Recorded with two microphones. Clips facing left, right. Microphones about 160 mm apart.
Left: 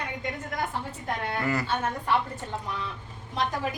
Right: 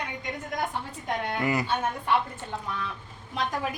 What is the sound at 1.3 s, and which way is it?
Speech, 15° right (ahead or behind).